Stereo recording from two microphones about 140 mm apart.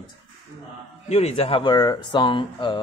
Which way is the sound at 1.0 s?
50° left (ahead or behind).